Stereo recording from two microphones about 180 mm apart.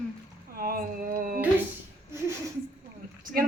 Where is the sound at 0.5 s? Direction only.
55° right (ahead or behind).